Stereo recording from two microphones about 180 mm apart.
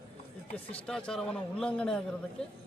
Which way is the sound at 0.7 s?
5° left (ahead or behind).